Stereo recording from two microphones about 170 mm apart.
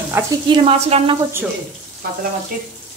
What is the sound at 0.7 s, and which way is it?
Speech, 35° right (ahead or behind).